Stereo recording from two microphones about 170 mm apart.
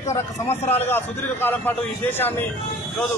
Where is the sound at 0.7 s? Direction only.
10° left (ahead or behind).